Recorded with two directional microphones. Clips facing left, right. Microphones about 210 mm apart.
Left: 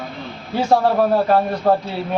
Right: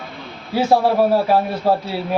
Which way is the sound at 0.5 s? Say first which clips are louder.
Right 1 dB; 5° right (ahead or behind).